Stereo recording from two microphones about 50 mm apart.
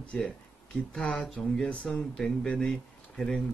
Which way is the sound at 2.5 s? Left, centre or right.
Centre.